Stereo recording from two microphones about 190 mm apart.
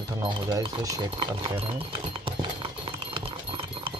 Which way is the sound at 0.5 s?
20° right (ahead or behind).